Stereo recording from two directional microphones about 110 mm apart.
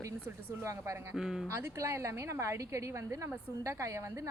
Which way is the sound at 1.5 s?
25° right (ahead or behind).